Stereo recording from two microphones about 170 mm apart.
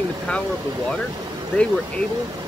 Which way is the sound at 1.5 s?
5° left (ahead or behind).